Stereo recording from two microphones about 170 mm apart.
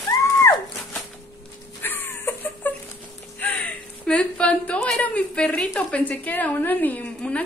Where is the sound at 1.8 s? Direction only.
10° left (ahead or behind).